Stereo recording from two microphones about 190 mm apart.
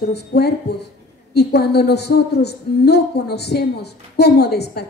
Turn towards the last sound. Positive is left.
turn(degrees=60)  # may be behind; listen again after turning